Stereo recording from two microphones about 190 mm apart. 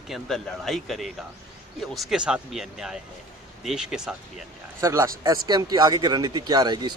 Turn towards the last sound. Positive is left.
turn(degrees=-20)  # may be behind; listen again after turning